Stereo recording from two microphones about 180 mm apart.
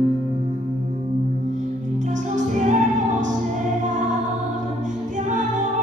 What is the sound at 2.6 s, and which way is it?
Music, 45° right (ahead or behind).